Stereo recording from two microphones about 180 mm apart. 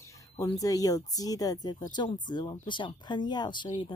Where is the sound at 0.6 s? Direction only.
20° left (ahead or behind).